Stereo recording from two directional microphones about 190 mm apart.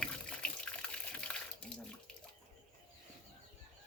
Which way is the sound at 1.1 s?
5° left (ahead or behind).